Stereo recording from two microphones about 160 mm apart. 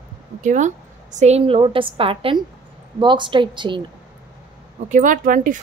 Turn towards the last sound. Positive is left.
turn(degrees=-55)  # may be behind; listen again after turning